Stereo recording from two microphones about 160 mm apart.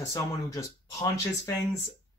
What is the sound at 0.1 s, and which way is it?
Speech, 20° left (ahead or behind).